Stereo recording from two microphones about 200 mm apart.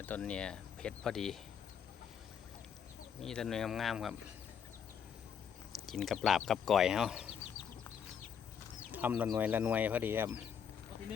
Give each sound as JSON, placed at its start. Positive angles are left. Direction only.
{"t": 0.0, "sound": "speech", "side_deg": 5}
{"t": 3.2, "sound": "speech", "side_deg": 0}
{"t": 5.7, "sound": "speech", "side_deg": 0}
{"t": 8.9, "sound": "speech", "side_deg": -10}